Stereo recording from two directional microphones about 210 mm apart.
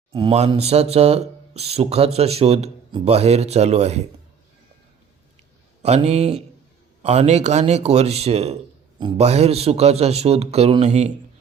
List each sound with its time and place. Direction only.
0.1 s speech: 25° right (ahead or behind)
5.8 s a man's voice: 30° right (ahead or behind)